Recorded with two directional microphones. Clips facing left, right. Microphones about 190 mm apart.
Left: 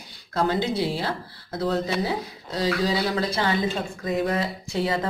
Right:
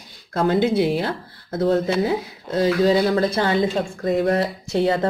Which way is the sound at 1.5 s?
50° right (ahead or behind).